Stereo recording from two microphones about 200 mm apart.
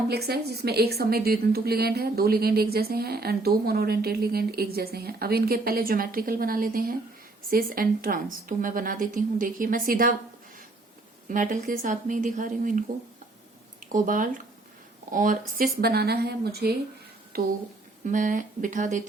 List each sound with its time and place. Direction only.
0.1 s a woman's voice: 50° right (ahead or behind)
11.3 s a woman's voice: 40° right (ahead or behind)
18.0 s a woman's voice: 40° right (ahead or behind)